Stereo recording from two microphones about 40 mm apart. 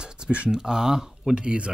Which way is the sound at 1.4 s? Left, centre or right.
Right.